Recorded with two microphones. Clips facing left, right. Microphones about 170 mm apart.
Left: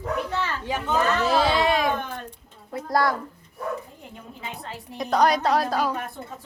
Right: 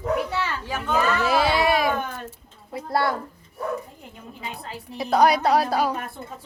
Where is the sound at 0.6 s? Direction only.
20° left (ahead or behind).